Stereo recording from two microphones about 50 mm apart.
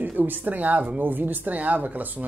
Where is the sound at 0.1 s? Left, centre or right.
Right.